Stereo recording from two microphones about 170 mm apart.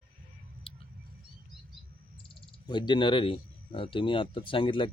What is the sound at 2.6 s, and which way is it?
Speech, 25° left (ahead or behind).